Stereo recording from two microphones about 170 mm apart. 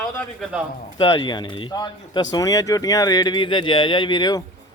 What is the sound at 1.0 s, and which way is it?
Speech, 25° left (ahead or behind).